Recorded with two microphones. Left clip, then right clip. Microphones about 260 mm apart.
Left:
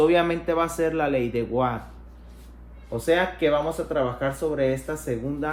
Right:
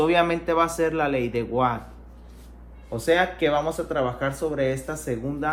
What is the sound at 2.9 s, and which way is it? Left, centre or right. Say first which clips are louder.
Speech: right 1 dB; right.